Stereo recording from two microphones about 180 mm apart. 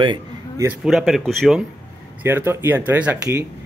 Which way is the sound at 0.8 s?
Centre (ahead or behind).